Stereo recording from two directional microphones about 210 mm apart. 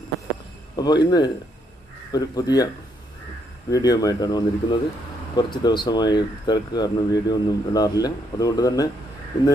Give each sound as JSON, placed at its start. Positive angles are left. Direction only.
{"t": 0.7, "sound": "speech", "side_deg": 20}
{"t": 3.7, "sound": "speech", "side_deg": 15}